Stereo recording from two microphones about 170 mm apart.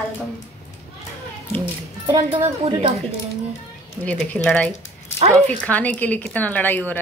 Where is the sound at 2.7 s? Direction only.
35° right (ahead or behind).